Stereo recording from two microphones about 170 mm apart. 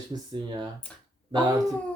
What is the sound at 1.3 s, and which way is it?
Speech, 25° right (ahead or behind).